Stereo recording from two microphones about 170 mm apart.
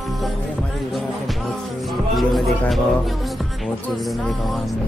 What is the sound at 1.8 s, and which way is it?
Speech, centre (ahead or behind).